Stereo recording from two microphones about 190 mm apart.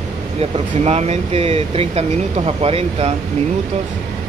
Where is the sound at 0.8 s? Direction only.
35° right (ahead or behind).